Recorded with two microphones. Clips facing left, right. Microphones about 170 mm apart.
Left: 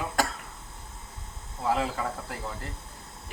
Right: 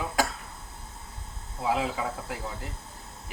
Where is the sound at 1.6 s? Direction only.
5° right (ahead or behind).